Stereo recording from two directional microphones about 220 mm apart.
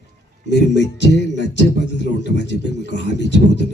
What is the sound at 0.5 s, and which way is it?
Beatboxing, 50° left (ahead or behind).